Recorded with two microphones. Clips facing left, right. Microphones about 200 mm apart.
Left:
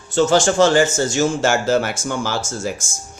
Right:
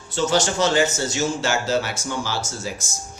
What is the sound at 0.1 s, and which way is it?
Speech, 50° left (ahead or behind).